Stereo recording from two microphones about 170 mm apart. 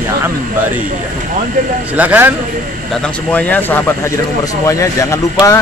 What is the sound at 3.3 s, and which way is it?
A man's voice, 10° left (ahead or behind).